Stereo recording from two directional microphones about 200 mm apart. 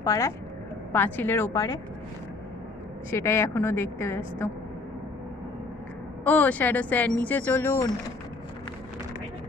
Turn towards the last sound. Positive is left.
turn(degrees=10)  # may be behind; listen again after turning